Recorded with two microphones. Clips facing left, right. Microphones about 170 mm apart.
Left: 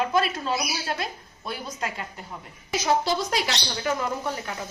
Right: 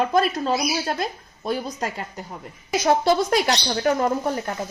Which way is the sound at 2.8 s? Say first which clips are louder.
Right 5 dB; 55° right (ahead or behind).